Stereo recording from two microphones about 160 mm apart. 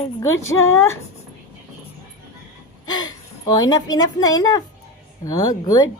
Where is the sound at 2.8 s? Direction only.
25° left (ahead or behind).